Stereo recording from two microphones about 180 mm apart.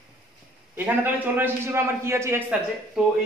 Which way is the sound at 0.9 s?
10° right (ahead or behind).